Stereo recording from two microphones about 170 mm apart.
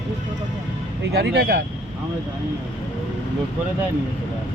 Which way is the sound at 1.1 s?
80° right.